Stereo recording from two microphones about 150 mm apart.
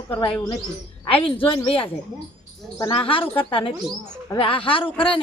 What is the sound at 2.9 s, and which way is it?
A woman's voice, 35° left (ahead or behind).